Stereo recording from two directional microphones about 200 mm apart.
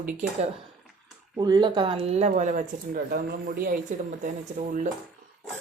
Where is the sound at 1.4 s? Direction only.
20° right (ahead or behind); by 4.9 s 40° right (ahead or behind).